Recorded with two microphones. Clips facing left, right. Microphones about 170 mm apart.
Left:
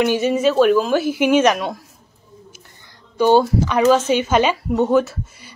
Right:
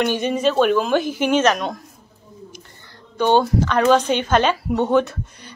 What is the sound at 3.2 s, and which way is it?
Speech, 10° left (ahead or behind).